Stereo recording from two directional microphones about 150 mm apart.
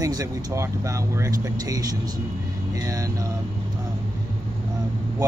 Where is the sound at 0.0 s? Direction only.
25° right (ahead or behind).